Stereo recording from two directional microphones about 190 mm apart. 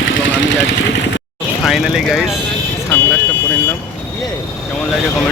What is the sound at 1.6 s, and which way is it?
Speech, centre (ahead or behind).